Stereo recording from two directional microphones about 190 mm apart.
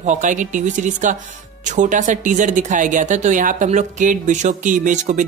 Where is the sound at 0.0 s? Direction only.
40° right (ahead or behind).